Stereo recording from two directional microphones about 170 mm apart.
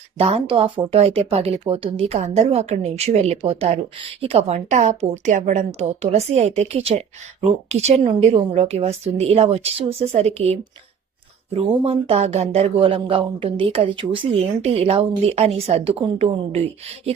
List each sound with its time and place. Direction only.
0.2 s speech: 35° right (ahead or behind)